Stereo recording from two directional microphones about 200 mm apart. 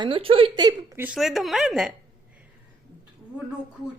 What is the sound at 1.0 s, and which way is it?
Speech, centre (ahead or behind).